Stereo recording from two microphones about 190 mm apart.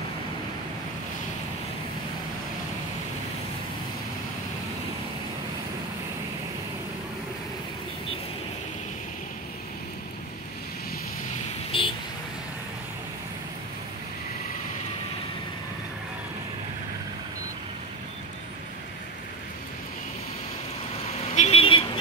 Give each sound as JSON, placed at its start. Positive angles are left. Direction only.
{"t": 11.7, "sound": "vehicle", "side_deg": 30}
{"t": 21.4, "sound": "vehicle", "side_deg": 30}